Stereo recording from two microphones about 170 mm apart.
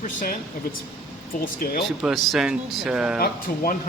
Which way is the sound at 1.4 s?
65° left (ahead or behind).